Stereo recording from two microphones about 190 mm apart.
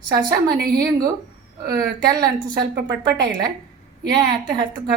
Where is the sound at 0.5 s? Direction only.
50° right (ahead or behind).